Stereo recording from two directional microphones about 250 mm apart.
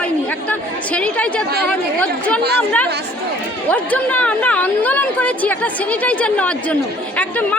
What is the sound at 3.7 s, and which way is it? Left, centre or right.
A woman's voice, centre.